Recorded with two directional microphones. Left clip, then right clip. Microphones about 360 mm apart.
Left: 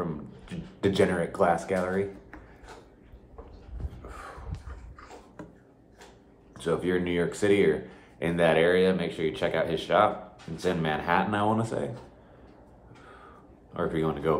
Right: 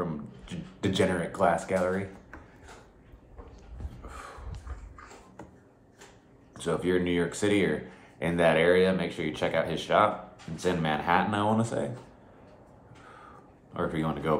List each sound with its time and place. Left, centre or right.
0.0 s speech: centre
6.5 s speech: centre
13.7 s speech: centre